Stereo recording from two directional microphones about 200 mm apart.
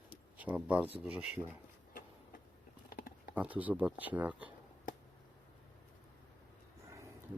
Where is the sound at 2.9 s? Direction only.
50° left (ahead or behind).